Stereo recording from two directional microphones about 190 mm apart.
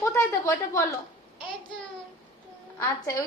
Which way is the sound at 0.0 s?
15° left (ahead or behind).